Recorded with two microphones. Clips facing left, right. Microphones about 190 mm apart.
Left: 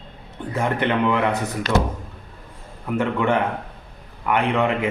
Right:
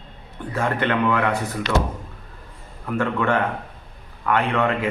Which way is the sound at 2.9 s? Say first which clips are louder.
Left 1 dB; 20° left (ahead or behind).